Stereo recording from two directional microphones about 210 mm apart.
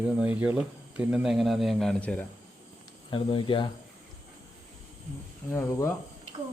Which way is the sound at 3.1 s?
25° left (ahead or behind).